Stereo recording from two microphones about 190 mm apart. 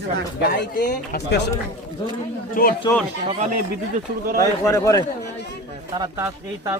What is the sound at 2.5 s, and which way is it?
Speech, 45° left (ahead or behind).